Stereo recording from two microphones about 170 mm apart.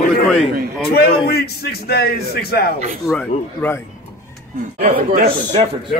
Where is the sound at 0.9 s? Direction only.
65° left (ahead or behind).